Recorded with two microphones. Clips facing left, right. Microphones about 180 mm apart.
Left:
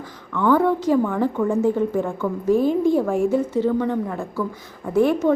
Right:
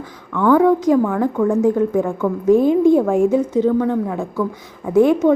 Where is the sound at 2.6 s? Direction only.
50° right (ahead or behind).